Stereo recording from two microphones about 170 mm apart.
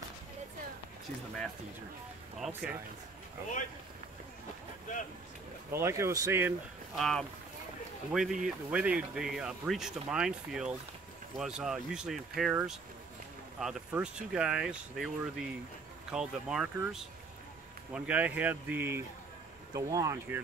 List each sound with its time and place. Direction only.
2.4 s speech: centre (ahead or behind)
5.7 s speech: 15° right (ahead or behind)
7.0 s speech: 5° left (ahead or behind); by 20.3 s 20° right (ahead or behind)